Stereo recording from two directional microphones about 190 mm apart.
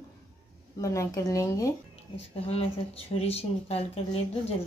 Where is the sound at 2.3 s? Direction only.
30° left (ahead or behind).